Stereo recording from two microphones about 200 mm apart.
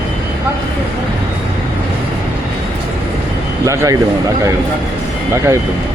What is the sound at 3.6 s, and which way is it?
Speech, 15° right (ahead or behind).